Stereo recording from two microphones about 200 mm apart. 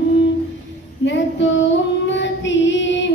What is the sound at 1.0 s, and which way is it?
Female singing, 65° left (ahead or behind).